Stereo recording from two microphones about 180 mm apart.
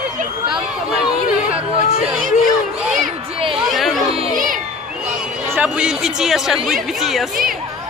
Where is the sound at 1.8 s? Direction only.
40° left (ahead or behind).